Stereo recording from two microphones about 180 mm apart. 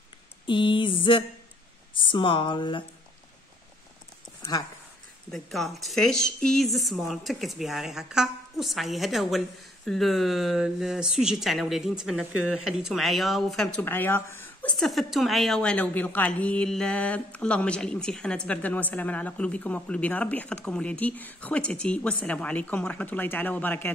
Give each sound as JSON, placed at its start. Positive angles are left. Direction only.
{"t": 0.5, "sound": "speech", "side_deg": 25}
{"t": 4.4, "sound": "a sound", "side_deg": 20}
{"t": 5.3, "sound": "a woman's voice", "side_deg": 0}